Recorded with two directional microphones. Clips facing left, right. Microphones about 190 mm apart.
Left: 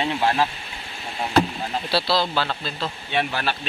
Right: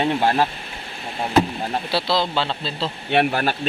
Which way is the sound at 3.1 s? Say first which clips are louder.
Right 6 dB; 50° right (ahead or behind).